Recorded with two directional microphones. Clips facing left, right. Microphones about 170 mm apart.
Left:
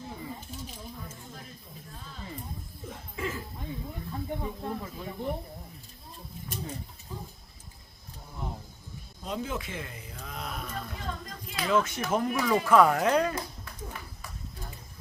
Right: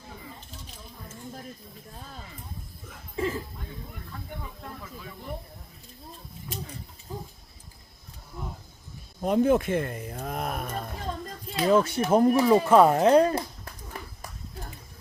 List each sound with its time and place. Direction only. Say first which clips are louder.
3.2 s cough: right 6 dB; 30° right (ahead or behind)
4.4 s snake: left 6 dB; 30° left (ahead or behind)
9.2 s a sound: right 12 dB; 55° right (ahead or behind)
11.5 s speech: right 5 dB; 35° right (ahead or behind)